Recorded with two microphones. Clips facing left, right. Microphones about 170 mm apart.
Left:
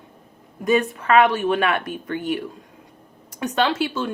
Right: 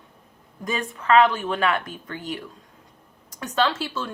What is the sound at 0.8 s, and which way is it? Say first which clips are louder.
Speech: right 4 dB; 60° left (ahead or behind).